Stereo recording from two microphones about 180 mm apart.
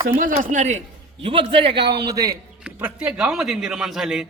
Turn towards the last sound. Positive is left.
turn(degrees=-5)  # may be behind; listen again after turning